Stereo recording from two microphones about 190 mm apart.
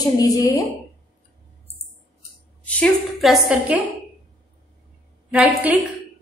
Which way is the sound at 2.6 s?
5° left (ahead or behind).